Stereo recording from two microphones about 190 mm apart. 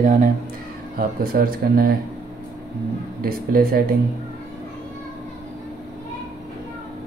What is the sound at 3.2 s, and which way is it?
Speech, 50° right (ahead or behind).